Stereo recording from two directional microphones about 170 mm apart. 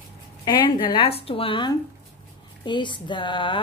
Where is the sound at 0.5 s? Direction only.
30° left (ahead or behind).